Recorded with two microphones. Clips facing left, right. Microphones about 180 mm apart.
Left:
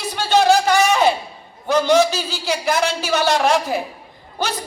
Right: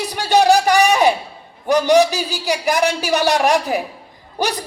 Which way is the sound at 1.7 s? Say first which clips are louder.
Right 2 dB; 15° right (ahead or behind).